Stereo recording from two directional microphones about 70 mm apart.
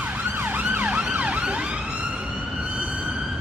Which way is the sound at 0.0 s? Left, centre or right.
Right.